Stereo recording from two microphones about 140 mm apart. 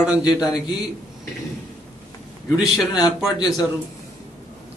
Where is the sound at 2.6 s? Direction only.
Centre (ahead or behind).